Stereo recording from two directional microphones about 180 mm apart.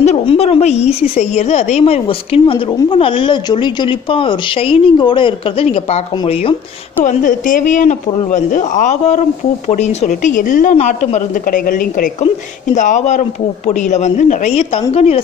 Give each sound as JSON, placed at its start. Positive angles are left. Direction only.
{"t": 0.0, "sound": "a woman's voice", "side_deg": 35}
{"t": 7.1, "sound": "a woman's voice", "side_deg": 50}